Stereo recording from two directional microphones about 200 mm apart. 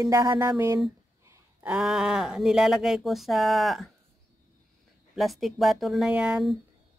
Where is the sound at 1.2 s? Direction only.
10° right (ahead or behind).